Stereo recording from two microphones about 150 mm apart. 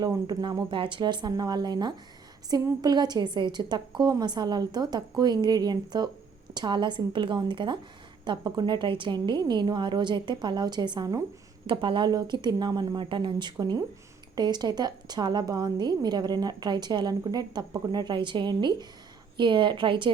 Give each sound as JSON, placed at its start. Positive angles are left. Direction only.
{"t": 0.0, "sound": "a woman's voice", "side_deg": -25}